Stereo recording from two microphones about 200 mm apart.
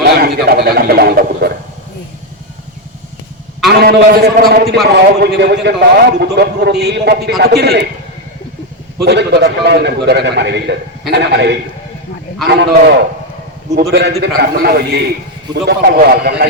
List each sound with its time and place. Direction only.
0.0 s a man's voice: 50° right (ahead or behind)
3.7 s a man's voice: 50° right (ahead or behind)
9.0 s a man's voice: 60° right (ahead or behind)
14.2 s a man's voice: 50° right (ahead or behind)